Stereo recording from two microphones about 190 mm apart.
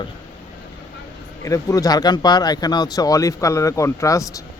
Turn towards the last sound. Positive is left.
turn(degrees=15)  # may be behind; listen again after turning